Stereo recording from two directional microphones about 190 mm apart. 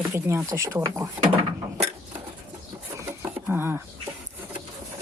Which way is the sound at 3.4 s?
10° right (ahead or behind).